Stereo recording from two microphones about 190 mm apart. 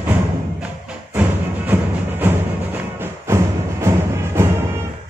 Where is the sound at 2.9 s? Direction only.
15° right (ahead or behind).